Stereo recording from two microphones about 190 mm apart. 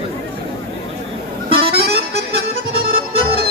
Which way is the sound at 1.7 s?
60° right (ahead or behind).